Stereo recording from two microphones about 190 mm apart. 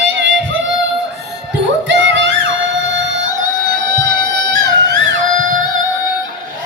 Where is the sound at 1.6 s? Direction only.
70° right (ahead or behind).